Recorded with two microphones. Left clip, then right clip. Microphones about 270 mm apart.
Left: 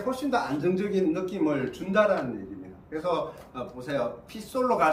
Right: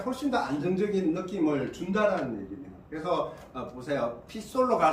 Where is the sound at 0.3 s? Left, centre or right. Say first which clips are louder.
Left 1 dB; centre.